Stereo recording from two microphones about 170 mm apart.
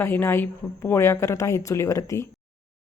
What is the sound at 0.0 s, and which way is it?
A woman's voice, 15° left (ahead or behind).